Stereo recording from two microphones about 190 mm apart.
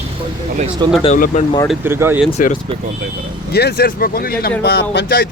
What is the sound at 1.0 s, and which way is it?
Speech, 45° left (ahead or behind).